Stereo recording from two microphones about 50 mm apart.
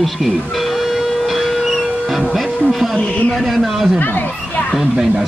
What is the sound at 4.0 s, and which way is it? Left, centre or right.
Speech, left.